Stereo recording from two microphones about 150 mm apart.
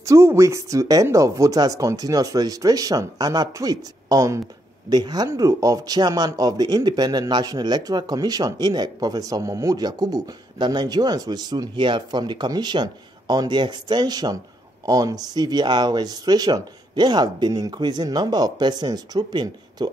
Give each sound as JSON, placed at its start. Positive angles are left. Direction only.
{"t": 0.0, "sound": "speech", "side_deg": -20}